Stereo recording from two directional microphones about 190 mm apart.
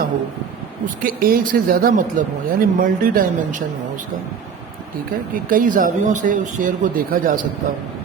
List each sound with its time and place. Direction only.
1.0 s speech: 50° right (ahead or behind)
5.5 s speech: 45° right (ahead or behind)